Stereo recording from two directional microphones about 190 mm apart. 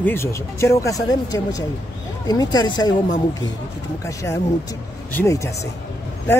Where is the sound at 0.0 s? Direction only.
15° left (ahead or behind).